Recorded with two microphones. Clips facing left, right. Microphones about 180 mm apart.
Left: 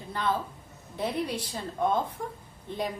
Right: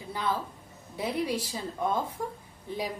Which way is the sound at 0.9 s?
10° right (ahead or behind).